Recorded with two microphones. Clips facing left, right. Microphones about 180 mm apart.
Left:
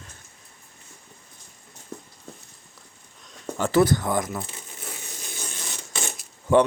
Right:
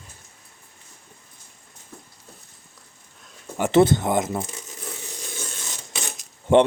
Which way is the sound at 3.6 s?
20° right (ahead or behind).